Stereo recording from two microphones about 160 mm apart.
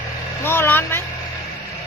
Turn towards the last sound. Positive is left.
turn(degrees=15)  # may be behind; listen again after turning